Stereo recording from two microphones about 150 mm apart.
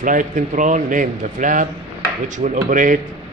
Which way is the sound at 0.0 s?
60° right (ahead or behind).